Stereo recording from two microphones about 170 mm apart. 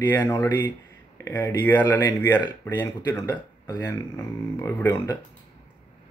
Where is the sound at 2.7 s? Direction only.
10° left (ahead or behind).